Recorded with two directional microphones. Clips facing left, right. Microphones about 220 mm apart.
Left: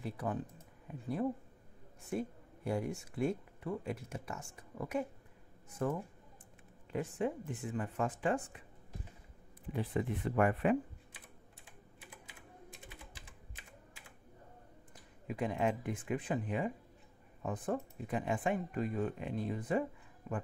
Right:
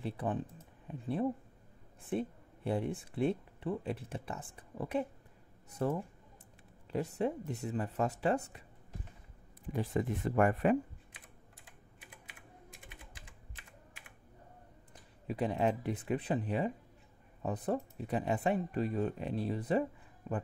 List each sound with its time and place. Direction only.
0.0 s speech: 30° right (ahead or behind)
2.0 s speech: 30° right (ahead or behind)
9.7 s speech: 40° right (ahead or behind)
12.7 s typing: 25° left (ahead or behind)
15.2 s speech: 35° right (ahead or behind)